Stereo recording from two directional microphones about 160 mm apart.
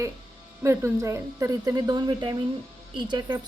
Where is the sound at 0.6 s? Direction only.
20° right (ahead or behind).